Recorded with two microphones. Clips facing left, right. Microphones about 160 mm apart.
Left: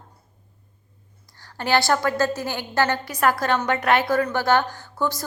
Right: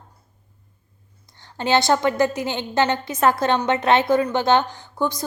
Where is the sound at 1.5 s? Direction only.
20° right (ahead or behind).